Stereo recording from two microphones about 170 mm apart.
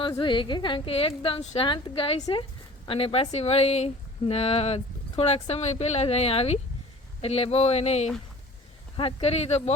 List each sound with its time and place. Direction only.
0.2 s speech: 30° left (ahead or behind)